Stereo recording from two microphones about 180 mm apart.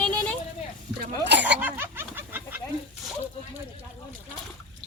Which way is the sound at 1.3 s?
75° right (ahead or behind).